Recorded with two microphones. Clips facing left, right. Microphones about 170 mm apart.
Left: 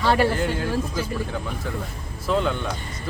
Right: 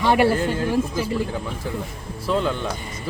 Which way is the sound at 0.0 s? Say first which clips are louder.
Right 2 dB; 15° right (ahead or behind).